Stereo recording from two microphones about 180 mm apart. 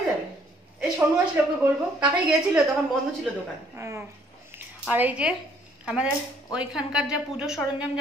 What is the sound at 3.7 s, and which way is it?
Speech, 15° right (ahead or behind).